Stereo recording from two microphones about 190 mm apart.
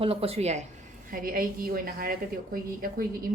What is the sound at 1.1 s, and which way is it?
A woman's voice, 50° right (ahead or behind).